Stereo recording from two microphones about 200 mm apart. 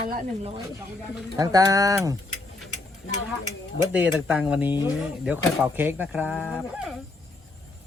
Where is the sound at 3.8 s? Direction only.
5° right (ahead or behind).